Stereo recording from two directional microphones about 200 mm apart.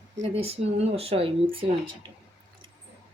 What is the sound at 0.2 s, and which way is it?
Speech, 30° right (ahead or behind).